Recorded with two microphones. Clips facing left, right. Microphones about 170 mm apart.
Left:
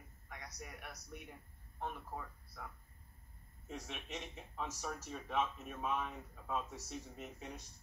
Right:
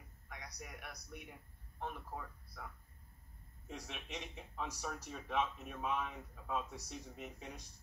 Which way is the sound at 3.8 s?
Centre (ahead or behind).